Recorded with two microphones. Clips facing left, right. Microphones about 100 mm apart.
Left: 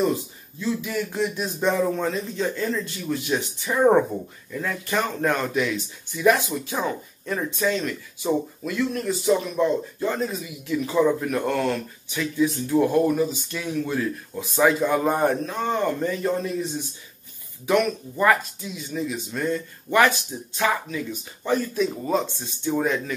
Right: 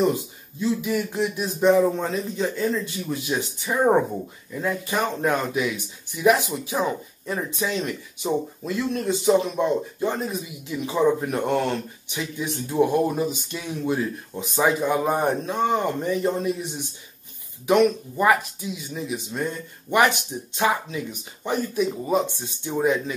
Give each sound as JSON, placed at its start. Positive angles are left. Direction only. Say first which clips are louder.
{"t": 0.6, "sound": "a man's voice", "louder": "right 2 dB", "side_deg": -15}
{"t": 17.6, "sound": "a man's voice", "louder": "right 3 dB", "side_deg": -15}